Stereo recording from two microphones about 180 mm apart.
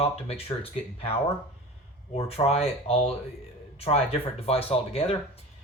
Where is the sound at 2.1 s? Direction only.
35° left (ahead or behind).